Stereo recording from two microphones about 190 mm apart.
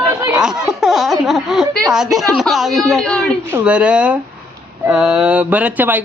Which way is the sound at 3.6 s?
5° right (ahead or behind).